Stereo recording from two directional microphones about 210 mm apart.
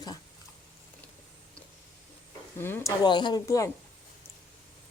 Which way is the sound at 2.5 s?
10° left (ahead or behind).